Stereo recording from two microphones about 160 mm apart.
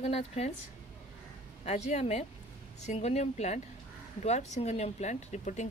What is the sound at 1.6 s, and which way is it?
Speech, 45° left (ahead or behind).